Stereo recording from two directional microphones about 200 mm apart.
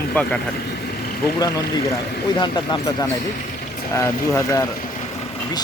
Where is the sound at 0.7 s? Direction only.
50° left (ahead or behind).